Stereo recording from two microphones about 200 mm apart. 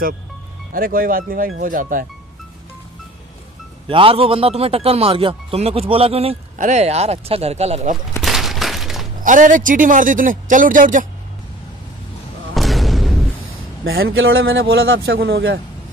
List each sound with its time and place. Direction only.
0.7 s speech: 45° right (ahead or behind)
3.9 s speech: 25° right (ahead or behind)
8.2 s a sound: centre (ahead or behind)
9.2 s speech: 40° right (ahead or behind)
12.5 s a sound: centre (ahead or behind)
13.9 s a man's voice: 70° right (ahead or behind)
15.1 s speech: 50° right (ahead or behind)